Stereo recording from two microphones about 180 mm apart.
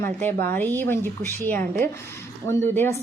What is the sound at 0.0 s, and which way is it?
A woman's voice, 10° left (ahead or behind).